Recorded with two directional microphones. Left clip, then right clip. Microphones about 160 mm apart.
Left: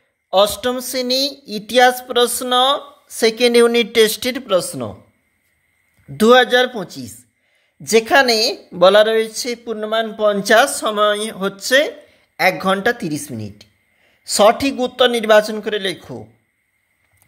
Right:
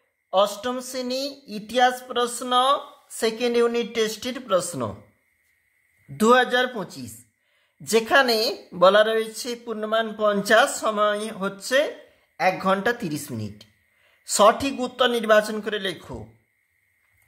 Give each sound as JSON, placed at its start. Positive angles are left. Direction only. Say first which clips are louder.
{"t": 0.3, "sound": "speech", "louder": "left 7 dB", "side_deg": 35}
{"t": 6.1, "sound": "a woman's voice", "louder": "left 7 dB", "side_deg": 25}